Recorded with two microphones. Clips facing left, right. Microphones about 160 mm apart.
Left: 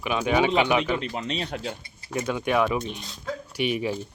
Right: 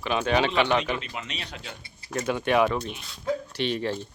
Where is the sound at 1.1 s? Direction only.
35° left (ahead or behind).